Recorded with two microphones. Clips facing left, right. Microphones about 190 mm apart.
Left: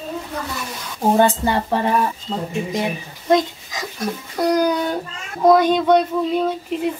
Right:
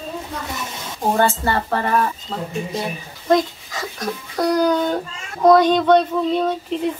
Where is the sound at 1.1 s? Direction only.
15° left (ahead or behind).